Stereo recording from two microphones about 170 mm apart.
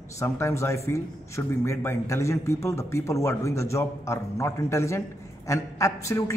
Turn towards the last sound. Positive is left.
turn(degrees=20)  # may be behind; listen again after turning